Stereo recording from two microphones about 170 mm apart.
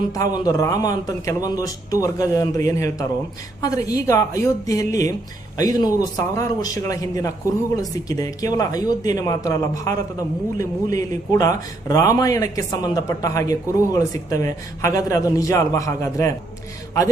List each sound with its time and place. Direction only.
0.1 s a man's voice: 20° left (ahead or behind)